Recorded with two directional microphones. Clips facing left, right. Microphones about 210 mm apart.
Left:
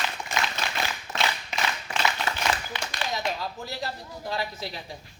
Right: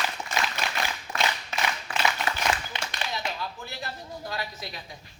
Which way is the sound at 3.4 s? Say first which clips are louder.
Left 3 dB; 35° left (ahead or behind).